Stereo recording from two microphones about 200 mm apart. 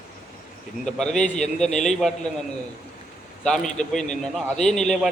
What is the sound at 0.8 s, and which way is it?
Speech, 5° left (ahead or behind).